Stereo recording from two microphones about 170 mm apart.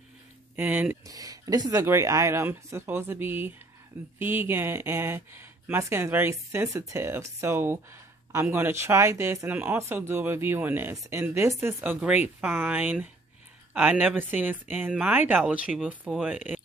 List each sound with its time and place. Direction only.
0.6 s speech: 10° right (ahead or behind)
1.1 s speech: 20° right (ahead or behind)